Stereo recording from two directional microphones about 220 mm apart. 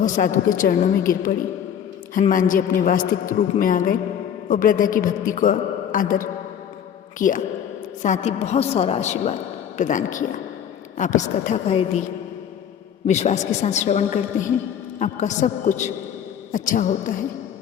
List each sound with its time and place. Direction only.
0.0 s a woman's voice: 35° left (ahead or behind)
2.1 s a woman's voice: 35° left (ahead or behind)
13.1 s a woman's voice: 30° left (ahead or behind)